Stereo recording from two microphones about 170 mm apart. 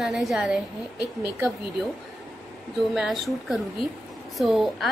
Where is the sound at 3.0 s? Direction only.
Centre (ahead or behind).